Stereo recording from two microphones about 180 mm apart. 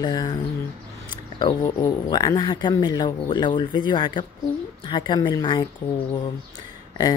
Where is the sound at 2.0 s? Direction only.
20° left (ahead or behind).